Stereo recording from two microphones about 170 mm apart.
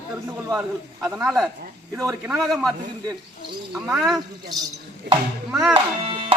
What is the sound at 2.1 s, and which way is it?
Speech, 15° right (ahead or behind).